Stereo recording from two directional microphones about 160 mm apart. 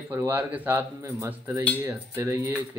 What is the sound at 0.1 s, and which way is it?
Speech, 10° right (ahead or behind).